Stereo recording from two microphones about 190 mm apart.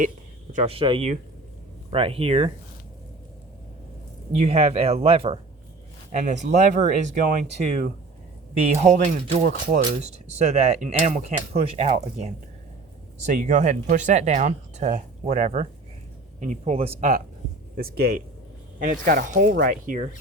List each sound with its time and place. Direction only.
0.5 s speech: 30° right (ahead or behind)
4.4 s speech: 30° right (ahead or behind)
6.1 s speech: 40° right (ahead or behind)
8.9 s speech: 40° right (ahead or behind)
13.2 s speech: 40° right (ahead or behind)
17.7 s speech: 50° right (ahead or behind)